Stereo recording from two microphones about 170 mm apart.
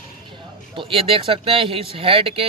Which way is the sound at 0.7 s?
30° right (ahead or behind).